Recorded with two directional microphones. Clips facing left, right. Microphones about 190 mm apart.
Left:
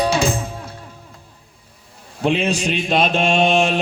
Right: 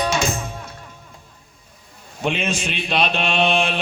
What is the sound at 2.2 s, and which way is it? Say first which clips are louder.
A man's voice: left 5 dB; 35° left (ahead or behind).